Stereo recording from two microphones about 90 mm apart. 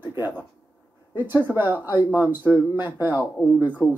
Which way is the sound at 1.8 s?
50° left (ahead or behind).